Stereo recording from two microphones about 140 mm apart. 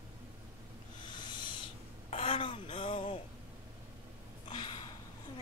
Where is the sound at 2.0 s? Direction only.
45° left (ahead or behind).